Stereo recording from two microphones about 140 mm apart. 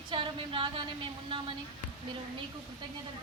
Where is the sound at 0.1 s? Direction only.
35° right (ahead or behind).